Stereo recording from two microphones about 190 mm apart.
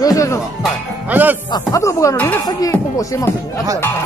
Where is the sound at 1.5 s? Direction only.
15° left (ahead or behind).